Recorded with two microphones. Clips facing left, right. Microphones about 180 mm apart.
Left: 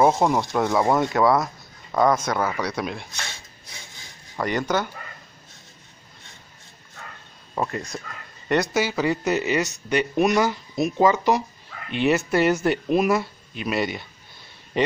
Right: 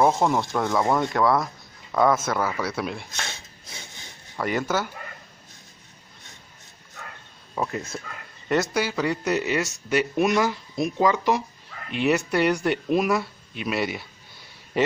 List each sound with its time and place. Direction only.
0.4 s speech: 5° left (ahead or behind)
4.4 s speech: 5° right (ahead or behind)
7.5 s speech: centre (ahead or behind)